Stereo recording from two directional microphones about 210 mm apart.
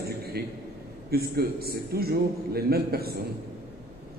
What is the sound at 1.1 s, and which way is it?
A man's voice, 45° right (ahead or behind).